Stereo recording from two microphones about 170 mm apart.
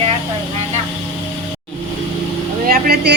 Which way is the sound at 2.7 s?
65° right (ahead or behind).